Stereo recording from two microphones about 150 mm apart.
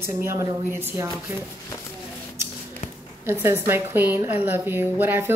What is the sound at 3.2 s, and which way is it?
A woman's voice, 15° right (ahead or behind).